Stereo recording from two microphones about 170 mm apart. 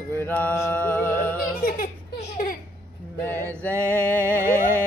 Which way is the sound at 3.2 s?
10° left (ahead or behind).